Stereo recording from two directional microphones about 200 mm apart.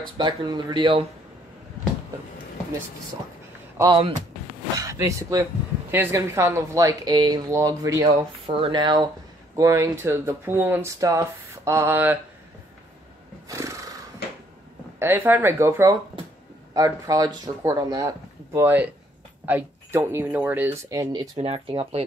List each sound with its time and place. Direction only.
0.2 s speech: 20° right (ahead or behind)
3.7 s speech: 20° right (ahead or behind)
13.5 s neigh: 15° right (ahead or behind)
15.0 s speech: 10° right (ahead or behind)
21.4 s speech: 30° right (ahead or behind)